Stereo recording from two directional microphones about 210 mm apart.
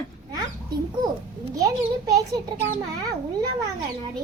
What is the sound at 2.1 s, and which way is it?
Speech, 15° right (ahead or behind).